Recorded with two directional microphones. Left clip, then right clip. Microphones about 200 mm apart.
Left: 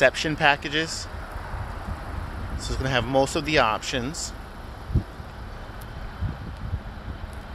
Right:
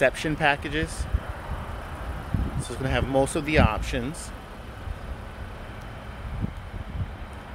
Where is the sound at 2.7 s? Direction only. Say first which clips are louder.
Left 2 dB; centre (ahead or behind).